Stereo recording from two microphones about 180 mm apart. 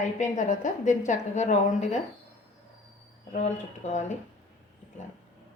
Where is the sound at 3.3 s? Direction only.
40° left (ahead or behind).